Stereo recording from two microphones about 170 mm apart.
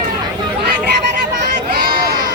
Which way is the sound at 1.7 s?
65° right (ahead or behind).